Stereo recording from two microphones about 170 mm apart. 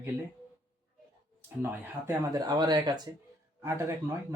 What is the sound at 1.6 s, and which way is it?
Speech, 10° right (ahead or behind).